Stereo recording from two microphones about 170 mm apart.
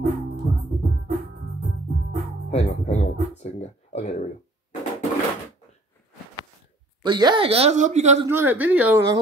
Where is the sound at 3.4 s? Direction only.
40° left (ahead or behind).